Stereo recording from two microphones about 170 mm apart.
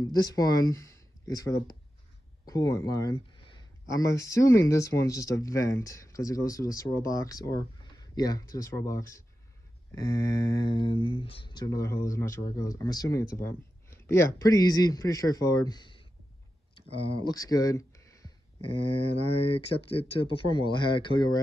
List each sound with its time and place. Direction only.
0.3 s speech: 20° left (ahead or behind)
18.7 s speech: 35° left (ahead or behind)